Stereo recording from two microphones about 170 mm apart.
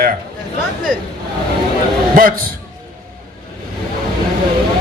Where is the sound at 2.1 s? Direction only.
55° right (ahead or behind).